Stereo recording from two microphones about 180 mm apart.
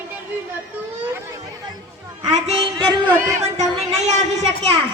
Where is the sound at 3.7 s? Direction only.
40° right (ahead or behind).